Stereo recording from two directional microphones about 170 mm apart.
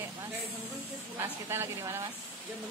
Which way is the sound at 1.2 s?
15° right (ahead or behind).